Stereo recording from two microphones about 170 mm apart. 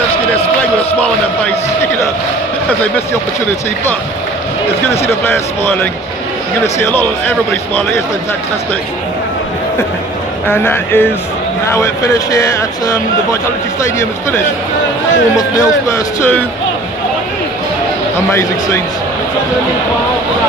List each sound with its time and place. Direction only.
5.0 s speech: 15° left (ahead or behind)
10.5 s speech: 10° left (ahead or behind)
15.3 s speech: 20° left (ahead or behind)
16.2 s speech: 10° left (ahead or behind)
18.3 s speech: 15° left (ahead or behind)